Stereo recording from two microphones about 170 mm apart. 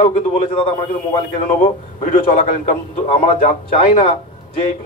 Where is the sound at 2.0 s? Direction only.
45° left (ahead or behind).